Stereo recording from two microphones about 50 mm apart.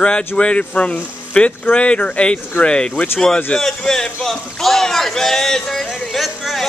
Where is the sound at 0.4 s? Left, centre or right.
Left.